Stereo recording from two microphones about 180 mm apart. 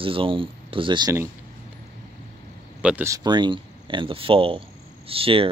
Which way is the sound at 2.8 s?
10° right (ahead or behind).